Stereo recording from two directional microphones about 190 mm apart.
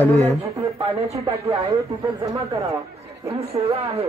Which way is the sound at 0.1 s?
35° right (ahead or behind).